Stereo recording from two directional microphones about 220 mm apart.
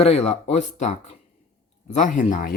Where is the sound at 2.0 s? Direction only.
35° left (ahead or behind).